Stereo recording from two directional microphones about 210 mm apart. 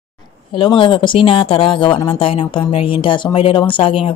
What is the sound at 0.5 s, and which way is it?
Speech, 25° left (ahead or behind).